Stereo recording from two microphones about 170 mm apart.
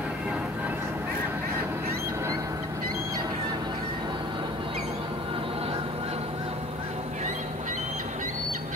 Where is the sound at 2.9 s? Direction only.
20° right (ahead or behind).